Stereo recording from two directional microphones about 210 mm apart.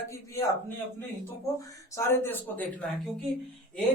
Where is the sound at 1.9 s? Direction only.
10° left (ahead or behind).